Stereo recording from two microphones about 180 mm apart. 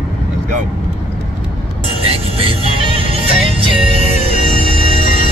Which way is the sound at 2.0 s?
30° right (ahead or behind).